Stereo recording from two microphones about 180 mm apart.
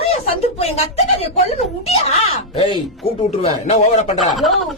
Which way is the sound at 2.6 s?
25° left (ahead or behind).